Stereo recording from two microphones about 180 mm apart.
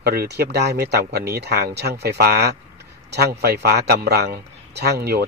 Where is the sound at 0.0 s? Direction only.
60° right (ahead or behind).